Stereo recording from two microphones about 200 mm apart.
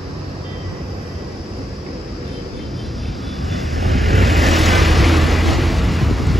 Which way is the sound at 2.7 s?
Centre (ahead or behind).